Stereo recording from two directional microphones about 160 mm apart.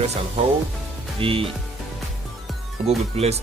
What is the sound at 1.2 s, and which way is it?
Speech, 35° right (ahead or behind).